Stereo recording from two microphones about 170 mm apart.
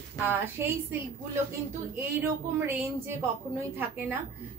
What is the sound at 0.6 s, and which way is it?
Speech, 15° right (ahead or behind).